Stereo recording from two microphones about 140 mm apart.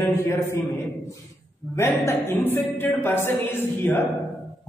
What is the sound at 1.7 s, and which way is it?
A man's voice, 20° left (ahead or behind).